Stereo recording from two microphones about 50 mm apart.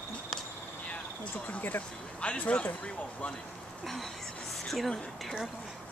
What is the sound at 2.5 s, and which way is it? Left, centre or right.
Speech, left.